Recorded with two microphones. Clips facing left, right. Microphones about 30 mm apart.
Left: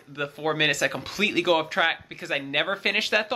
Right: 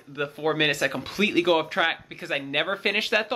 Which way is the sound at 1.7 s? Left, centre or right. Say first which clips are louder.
Left 1 dB; centre.